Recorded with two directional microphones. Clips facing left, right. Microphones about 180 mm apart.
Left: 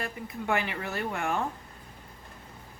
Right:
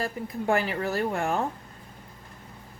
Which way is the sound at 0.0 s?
35° right (ahead or behind).